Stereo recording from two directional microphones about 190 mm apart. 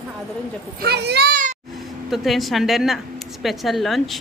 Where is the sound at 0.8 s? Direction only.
60° right (ahead or behind).